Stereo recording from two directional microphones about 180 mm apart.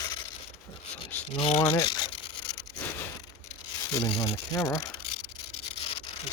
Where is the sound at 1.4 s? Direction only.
35° left (ahead or behind).